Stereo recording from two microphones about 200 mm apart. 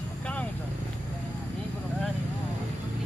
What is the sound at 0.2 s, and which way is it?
Vehicle, 5° left (ahead or behind).